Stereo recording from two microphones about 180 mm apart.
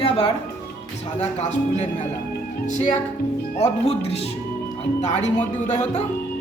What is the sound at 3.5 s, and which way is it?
Speech, 35° left (ahead or behind).